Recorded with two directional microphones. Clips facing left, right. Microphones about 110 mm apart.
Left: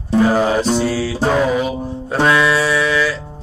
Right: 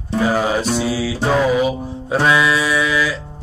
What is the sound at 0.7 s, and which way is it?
Music, 5° right (ahead or behind).